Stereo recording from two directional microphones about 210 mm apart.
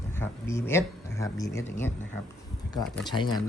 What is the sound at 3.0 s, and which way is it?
Speech, 20° left (ahead or behind).